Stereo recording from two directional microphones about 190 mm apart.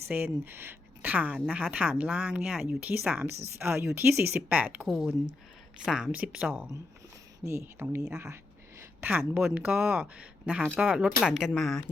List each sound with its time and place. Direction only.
0.1 s a woman's voice: 10° right (ahead or behind)